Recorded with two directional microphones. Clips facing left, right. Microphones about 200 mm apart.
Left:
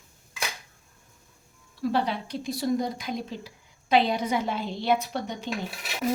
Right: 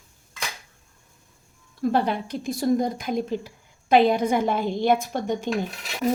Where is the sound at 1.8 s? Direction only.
50° right (ahead or behind).